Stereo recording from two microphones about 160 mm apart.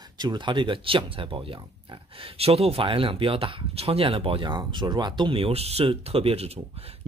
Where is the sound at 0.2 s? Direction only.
30° right (ahead or behind).